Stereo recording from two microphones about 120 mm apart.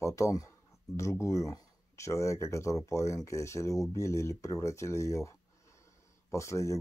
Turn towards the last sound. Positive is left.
turn(degrees=25)  # may be behind; listen again after turning